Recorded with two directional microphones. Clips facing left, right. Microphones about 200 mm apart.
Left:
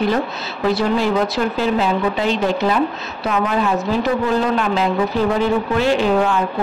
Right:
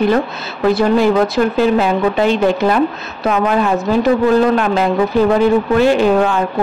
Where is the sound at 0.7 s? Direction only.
50° right (ahead or behind).